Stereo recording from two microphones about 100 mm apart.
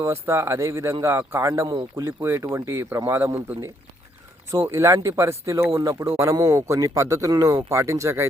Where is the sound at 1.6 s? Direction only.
50° right (ahead or behind).